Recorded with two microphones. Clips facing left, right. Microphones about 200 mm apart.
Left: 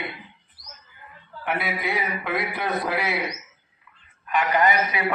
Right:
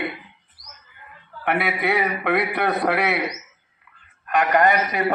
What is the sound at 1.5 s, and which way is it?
A man's voice, 65° right (ahead or behind).